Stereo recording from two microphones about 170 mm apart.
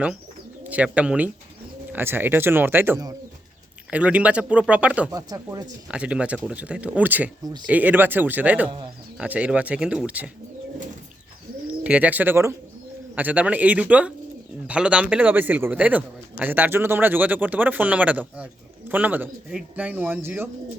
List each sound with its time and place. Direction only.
0.6 s a man's voice: 10° right (ahead or behind)
5.1 s speech: 20° right (ahead or behind)
5.9 s a man's voice: 5° right (ahead or behind)
11.7 s a man's voice: 10° right (ahead or behind)